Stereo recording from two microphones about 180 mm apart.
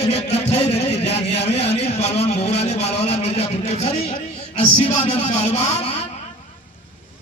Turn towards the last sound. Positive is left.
turn(degrees=35)  # may be behind; listen again after turning